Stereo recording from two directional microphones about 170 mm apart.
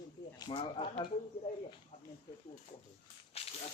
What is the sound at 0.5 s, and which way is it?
Speech, 35° left (ahead or behind).